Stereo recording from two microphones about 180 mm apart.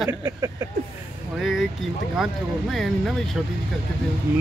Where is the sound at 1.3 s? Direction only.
Centre (ahead or behind).